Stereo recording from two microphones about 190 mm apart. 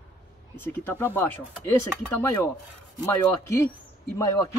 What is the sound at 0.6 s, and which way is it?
Speech, 10° left (ahead or behind).